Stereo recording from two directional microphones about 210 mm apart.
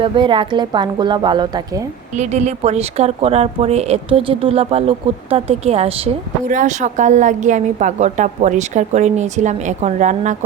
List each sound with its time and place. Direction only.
0.0 s a woman's voice: 25° right (ahead or behind)
2.1 s speech: 35° right (ahead or behind)